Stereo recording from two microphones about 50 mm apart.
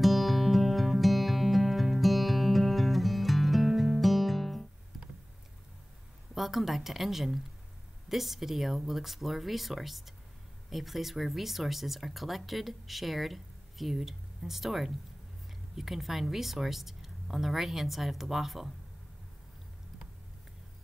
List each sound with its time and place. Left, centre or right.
0.0 s music: centre
6.3 s speech: centre